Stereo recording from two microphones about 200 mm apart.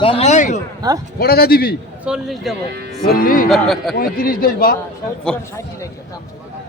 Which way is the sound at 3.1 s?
45° left (ahead or behind).